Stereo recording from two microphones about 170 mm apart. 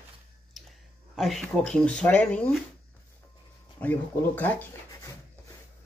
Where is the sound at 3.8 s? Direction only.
10° left (ahead or behind).